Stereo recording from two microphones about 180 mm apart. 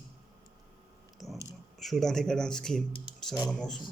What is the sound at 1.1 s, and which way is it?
A man's voice, centre (ahead or behind).